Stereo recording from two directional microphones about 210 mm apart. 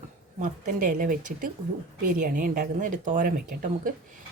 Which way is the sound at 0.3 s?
40° right (ahead or behind).